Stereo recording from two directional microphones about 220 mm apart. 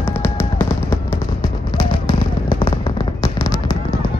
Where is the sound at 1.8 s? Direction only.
20° left (ahead or behind).